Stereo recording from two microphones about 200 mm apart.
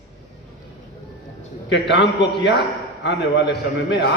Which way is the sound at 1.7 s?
60° left (ahead or behind).